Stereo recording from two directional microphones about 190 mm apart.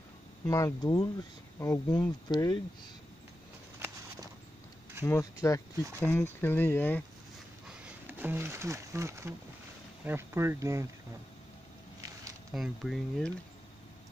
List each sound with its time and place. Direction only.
0.5 s speech: 15° left (ahead or behind)
5.4 s speech: 15° left (ahead or behind)
7.8 s speech: 10° right (ahead or behind)
12.5 s speech: centre (ahead or behind)